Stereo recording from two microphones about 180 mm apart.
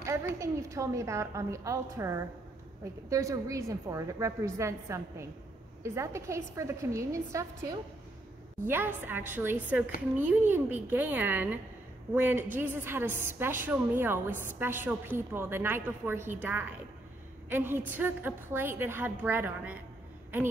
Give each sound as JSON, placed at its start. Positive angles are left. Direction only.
{"t": 0.0, "sound": "a woman's voice", "side_deg": -15}
{"t": 8.6, "sound": "a woman's voice", "side_deg": -10}